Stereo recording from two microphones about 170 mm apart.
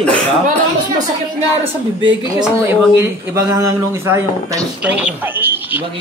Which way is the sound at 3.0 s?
20° right (ahead or behind).